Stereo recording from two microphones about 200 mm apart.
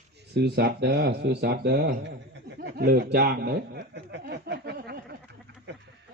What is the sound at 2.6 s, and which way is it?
Chuckle, 50° right (ahead or behind).